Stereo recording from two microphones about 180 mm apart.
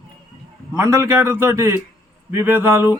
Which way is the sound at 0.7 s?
15° right (ahead or behind).